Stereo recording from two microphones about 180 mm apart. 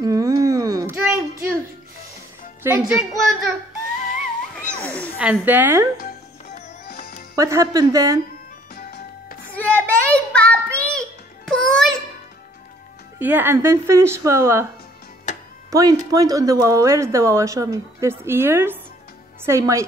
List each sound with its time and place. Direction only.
0.0 s a sound: 20° right (ahead or behind)
2.6 s a child's voice: 5° right (ahead or behind)
4.7 s a sound: 10° left (ahead or behind)
5.2 s speech: 10° right (ahead or behind)
6.5 s music: 55° left (ahead or behind)
7.3 s speech: 15° right (ahead or behind)
8.7 s music: 60° left (ahead or behind)
9.6 s music: 10° left (ahead or behind)
13.2 s speech: 10° right (ahead or behind)
15.3 s music: 40° left (ahead or behind)
15.7 s speech: 20° right (ahead or behind)